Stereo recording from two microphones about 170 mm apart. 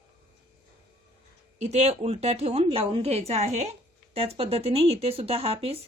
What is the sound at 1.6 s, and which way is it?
A woman's voice, 40° right (ahead or behind).